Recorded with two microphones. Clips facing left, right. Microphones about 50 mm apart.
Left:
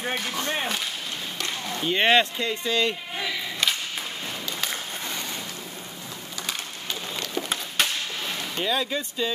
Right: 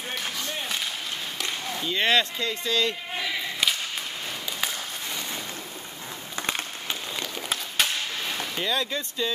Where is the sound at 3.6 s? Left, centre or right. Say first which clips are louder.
Left 1 dB; centre.